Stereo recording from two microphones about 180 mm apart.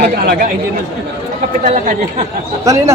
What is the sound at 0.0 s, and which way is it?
Speech, 55° right (ahead or behind).